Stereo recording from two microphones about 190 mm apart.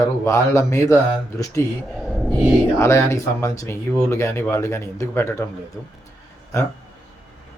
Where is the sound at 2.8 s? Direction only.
15° left (ahead or behind).